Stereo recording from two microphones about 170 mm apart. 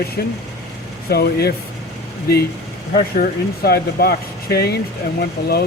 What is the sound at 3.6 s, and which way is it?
Speech, 65° left (ahead or behind).